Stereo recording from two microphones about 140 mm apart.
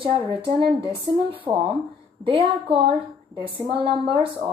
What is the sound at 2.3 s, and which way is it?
A woman's voice, 40° right (ahead or behind).